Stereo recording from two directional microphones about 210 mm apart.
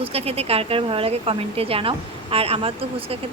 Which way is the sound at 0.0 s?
30° right (ahead or behind).